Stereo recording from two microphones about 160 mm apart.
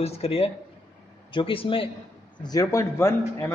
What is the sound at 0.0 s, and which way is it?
A man's voice, 40° left (ahead or behind).